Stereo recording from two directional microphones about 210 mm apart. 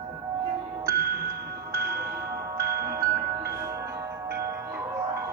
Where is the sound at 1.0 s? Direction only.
45° right (ahead or behind).